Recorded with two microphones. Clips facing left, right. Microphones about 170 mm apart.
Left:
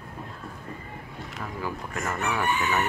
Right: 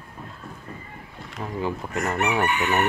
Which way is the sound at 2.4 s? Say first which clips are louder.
Right 3 dB; 70° right (ahead or behind).